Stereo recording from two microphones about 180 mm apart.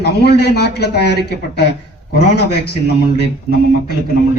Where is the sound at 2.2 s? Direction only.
65° left (ahead or behind).